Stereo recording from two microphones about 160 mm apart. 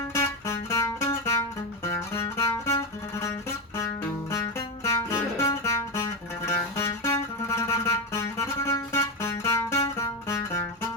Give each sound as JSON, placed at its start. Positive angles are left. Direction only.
{"t": 0.1, "sound": "music", "side_deg": 15}